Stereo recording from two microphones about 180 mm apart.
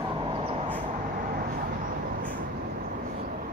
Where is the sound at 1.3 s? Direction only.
50° right (ahead or behind).